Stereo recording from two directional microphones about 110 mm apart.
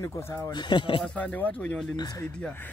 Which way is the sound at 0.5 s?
45° left (ahead or behind).